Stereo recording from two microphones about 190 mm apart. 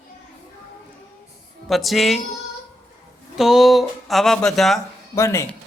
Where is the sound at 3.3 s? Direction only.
Centre (ahead or behind).